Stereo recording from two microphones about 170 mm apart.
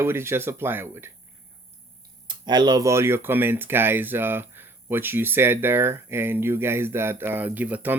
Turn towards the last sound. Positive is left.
turn(degrees=-10)  # may be behind; listen again after turning